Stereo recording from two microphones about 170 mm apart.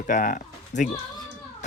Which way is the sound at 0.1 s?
50° left (ahead or behind).